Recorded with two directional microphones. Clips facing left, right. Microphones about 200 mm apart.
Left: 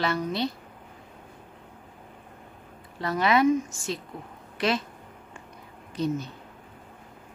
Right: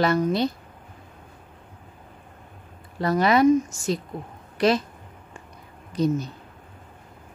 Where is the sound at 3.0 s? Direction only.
40° right (ahead or behind).